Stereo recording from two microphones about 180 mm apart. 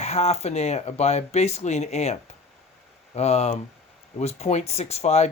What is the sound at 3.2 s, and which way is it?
Speech, 35° left (ahead or behind).